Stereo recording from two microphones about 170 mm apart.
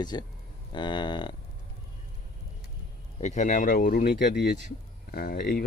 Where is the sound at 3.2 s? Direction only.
45° left (ahead or behind).